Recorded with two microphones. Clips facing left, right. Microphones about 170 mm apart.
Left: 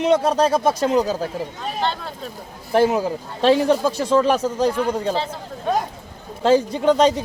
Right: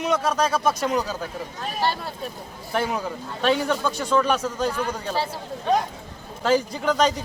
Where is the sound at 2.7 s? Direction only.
30° left (ahead or behind).